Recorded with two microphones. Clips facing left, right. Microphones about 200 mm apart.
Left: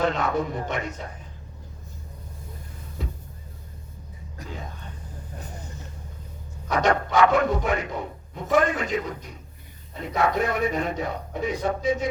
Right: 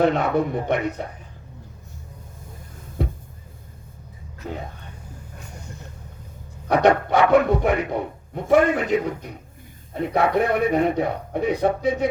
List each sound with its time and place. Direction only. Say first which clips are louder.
0.0 s speech: right 5 dB; 60° right (ahead or behind)
3.0 s a sound: right 8 dB; 60° right (ahead or behind)
6.7 s speech: right 6 dB; 60° right (ahead or behind)